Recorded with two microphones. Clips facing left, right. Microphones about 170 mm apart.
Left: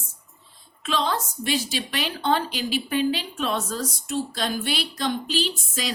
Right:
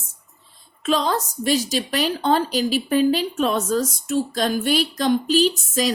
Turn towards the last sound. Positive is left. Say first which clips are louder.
# right 9 dB
turn(degrees=-45)  # may be behind; listen again after turning